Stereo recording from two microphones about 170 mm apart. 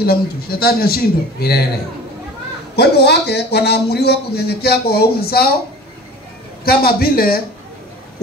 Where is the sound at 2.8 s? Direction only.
80° left.